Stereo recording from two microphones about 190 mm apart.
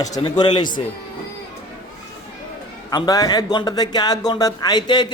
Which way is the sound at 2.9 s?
20° left (ahead or behind).